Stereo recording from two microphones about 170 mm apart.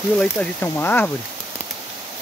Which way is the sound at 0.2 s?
10° left (ahead or behind).